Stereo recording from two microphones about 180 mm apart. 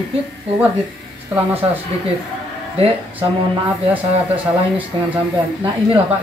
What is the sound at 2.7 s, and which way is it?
Speech, 35° right (ahead or behind).